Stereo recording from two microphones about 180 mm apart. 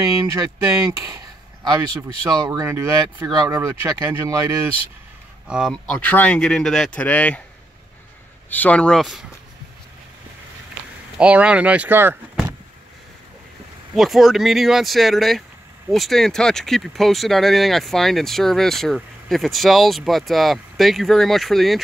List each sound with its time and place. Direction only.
0.2 s speech: 20° right (ahead or behind)
1.1 s a sound: 20° right (ahead or behind)
2.2 s speech: 20° right (ahead or behind)
5.5 s speech: centre (ahead or behind)
8.5 s speech: 10° left (ahead or behind)
11.1 s speech: 5° right (ahead or behind)
13.9 s speech: centre (ahead or behind)